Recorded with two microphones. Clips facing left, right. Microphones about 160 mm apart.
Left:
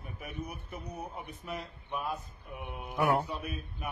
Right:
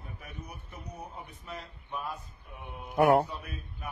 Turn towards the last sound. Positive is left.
turn(degrees=-60)  # may be behind; listen again after turning